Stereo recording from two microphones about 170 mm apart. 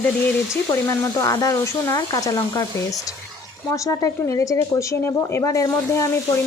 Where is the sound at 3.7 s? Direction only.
20° left (ahead or behind).